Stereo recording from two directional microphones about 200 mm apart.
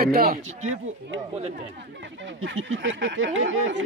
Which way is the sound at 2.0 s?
65° right (ahead or behind).